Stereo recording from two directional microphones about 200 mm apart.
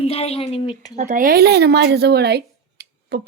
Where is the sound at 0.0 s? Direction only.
30° left (ahead or behind).